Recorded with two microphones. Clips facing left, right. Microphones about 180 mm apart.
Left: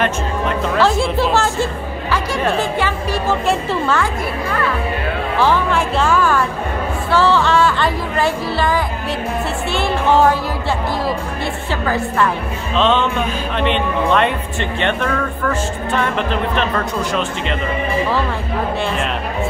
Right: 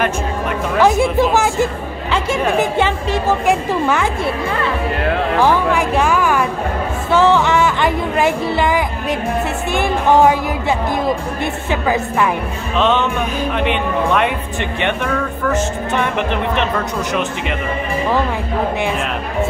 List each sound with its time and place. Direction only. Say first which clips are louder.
0.0 s speech: even; 10° right (ahead or behind)
5.4 s a woman's voice: even; 15° right (ahead or behind)